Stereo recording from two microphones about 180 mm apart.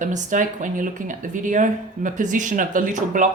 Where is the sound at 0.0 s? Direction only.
45° right (ahead or behind).